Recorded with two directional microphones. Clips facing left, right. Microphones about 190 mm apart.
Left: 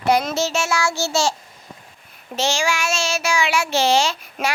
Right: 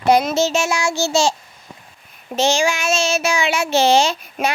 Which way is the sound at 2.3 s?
20° right (ahead or behind).